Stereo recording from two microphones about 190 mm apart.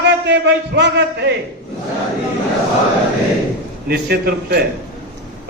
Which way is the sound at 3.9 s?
55° right (ahead or behind).